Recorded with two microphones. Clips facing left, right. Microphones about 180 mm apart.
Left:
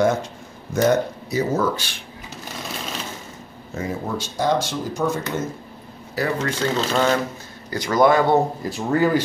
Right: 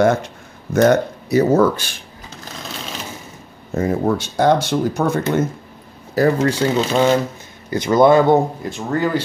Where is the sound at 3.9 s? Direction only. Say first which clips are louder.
Right 8 dB; 60° right (ahead or behind).